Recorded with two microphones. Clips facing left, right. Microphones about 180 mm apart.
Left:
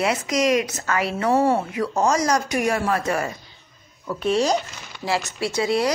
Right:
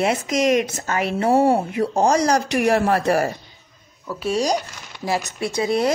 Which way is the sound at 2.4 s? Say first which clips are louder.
Right 3 dB; 60° right (ahead or behind).